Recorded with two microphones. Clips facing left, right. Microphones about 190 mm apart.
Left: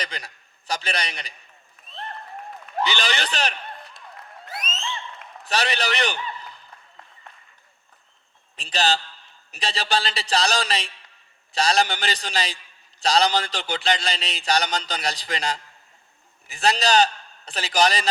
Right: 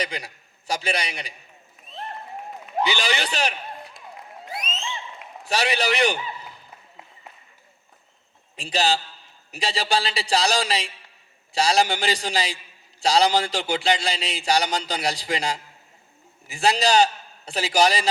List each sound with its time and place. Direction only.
0.0 s a man's voice: 5° right (ahead or behind)
1.9 s applause: 5° right (ahead or behind)
2.5 s a man's voice: 10° right (ahead or behind)
4.0 s applause: 15° right (ahead or behind)
4.9 s a sound: 5° right (ahead or behind)
8.8 s a man's voice: centre (ahead or behind)
16.6 s a man's voice: centre (ahead or behind)